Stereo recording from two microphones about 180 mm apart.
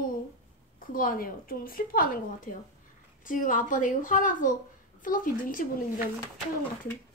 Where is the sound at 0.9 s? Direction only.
50° left (ahead or behind).